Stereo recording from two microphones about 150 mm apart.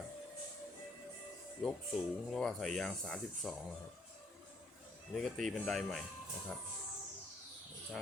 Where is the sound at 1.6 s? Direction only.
Centre (ahead or behind).